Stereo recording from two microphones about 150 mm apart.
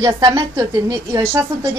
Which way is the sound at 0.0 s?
25° right (ahead or behind).